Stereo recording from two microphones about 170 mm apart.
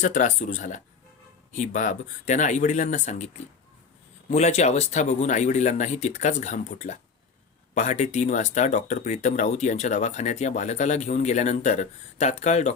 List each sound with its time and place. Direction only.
0.0 s speech: 45° left (ahead or behind)
4.3 s speech: 40° left (ahead or behind)